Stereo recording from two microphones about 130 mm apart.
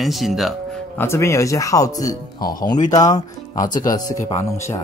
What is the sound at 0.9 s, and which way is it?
Speech, 20° left (ahead or behind).